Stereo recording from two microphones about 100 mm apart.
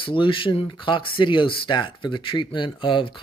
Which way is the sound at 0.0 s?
55° left (ahead or behind).